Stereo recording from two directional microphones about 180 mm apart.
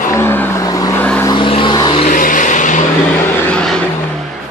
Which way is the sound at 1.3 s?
30° left (ahead or behind).